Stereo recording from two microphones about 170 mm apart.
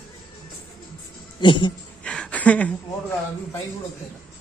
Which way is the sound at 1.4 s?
30° left (ahead or behind).